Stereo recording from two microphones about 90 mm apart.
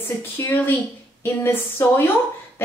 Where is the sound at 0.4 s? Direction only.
25° left (ahead or behind).